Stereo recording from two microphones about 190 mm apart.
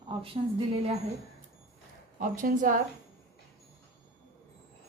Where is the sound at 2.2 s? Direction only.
45° right (ahead or behind).